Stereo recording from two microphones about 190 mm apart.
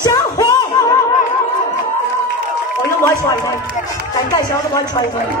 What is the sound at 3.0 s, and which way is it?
Speech, 15° left (ahead or behind).